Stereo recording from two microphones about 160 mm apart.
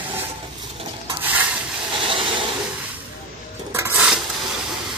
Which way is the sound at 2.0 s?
30° right (ahead or behind).